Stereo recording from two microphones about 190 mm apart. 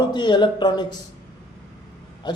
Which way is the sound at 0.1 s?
25° left (ahead or behind).